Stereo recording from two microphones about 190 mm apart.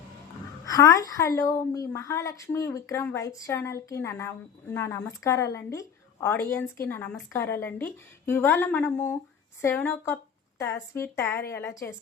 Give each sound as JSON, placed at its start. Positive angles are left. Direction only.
{"t": 0.6, "sound": "a woman's voice", "side_deg": 15}